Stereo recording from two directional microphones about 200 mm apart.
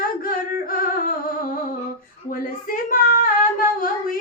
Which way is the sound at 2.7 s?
45° left (ahead or behind).